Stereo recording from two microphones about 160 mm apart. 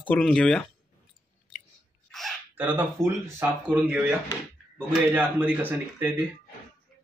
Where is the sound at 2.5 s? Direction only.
10° right (ahead or behind).